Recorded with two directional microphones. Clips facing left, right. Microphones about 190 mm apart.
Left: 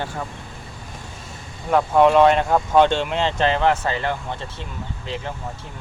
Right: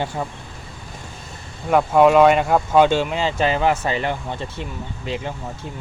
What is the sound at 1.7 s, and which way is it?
Speech, 10° right (ahead or behind).